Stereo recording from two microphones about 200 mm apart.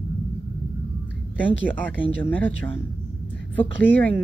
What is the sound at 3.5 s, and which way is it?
Speech, 10° left (ahead or behind).